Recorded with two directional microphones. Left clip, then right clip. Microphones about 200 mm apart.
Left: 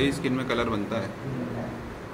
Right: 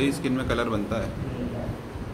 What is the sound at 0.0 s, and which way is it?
A man's voice, centre (ahead or behind).